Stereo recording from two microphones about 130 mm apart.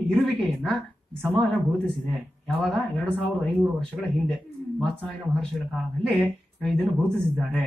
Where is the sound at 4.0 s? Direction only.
5° left (ahead or behind).